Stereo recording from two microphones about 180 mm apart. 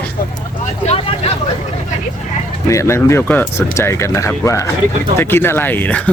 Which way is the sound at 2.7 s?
15° left (ahead or behind).